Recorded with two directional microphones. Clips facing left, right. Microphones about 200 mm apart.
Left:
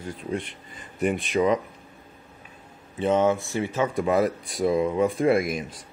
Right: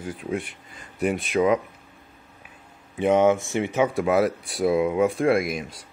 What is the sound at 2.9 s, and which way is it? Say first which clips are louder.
Speech: right 3 dB; 15° right (ahead or behind).